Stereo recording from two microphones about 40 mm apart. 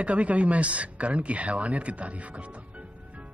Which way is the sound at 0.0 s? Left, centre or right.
Right.